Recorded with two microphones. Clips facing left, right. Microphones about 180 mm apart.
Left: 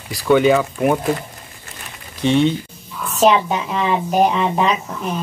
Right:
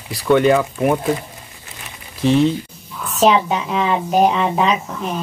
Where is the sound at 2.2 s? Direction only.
Centre (ahead or behind).